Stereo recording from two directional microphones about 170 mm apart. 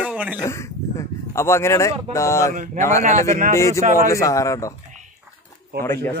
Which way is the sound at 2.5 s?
50° right (ahead or behind).